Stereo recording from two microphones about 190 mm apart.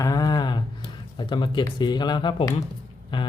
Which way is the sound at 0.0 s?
20° left (ahead or behind).